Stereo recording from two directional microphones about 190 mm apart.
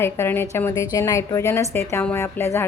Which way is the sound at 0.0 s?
10° left (ahead or behind).